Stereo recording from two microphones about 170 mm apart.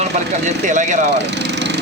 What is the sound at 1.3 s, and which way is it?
Lawn mower, 85° right.